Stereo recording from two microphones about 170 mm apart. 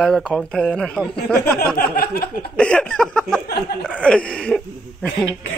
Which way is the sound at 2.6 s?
5° left (ahead or behind).